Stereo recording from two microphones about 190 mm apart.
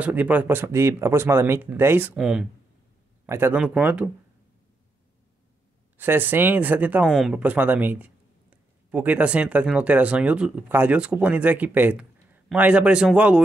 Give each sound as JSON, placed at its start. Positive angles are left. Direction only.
{"t": 0.0, "sound": "speech", "side_deg": -10}
{"t": 5.9, "sound": "speech", "side_deg": -10}